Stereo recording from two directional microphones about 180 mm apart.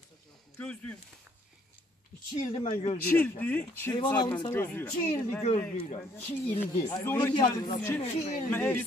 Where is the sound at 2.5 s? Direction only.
35° left (ahead or behind).